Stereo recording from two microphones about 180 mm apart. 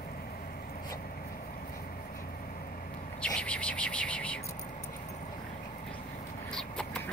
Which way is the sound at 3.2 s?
5° left (ahead or behind).